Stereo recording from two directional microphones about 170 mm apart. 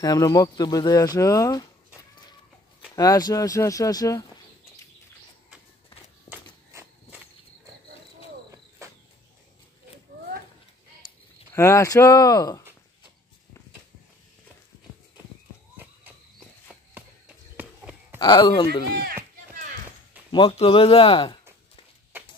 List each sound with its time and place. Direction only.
0.0 s speech: 20° left (ahead or behind)
3.0 s speech: 20° left (ahead or behind)
6.3 s walk: 10° right (ahead or behind)
8.5 s cricket: 20° right (ahead or behind)
11.5 s speech: 15° left (ahead or behind)
15.8 s insect: 10° right (ahead or behind)
16.3 s walk: 5° right (ahead or behind)
17.6 s a sound: 10° right (ahead or behind)
18.2 s speech: 25° left (ahead or behind)
20.2 s speech: 30° left (ahead or behind)